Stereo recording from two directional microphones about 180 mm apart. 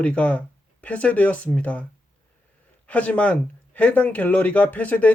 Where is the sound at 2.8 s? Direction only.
5° left (ahead or behind).